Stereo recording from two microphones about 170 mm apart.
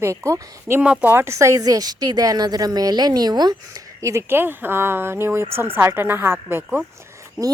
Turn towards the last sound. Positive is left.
turn(degrees=-15)  # may be behind; listen again after turning